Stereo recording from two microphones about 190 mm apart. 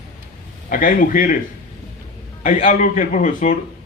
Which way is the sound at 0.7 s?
45° left (ahead or behind).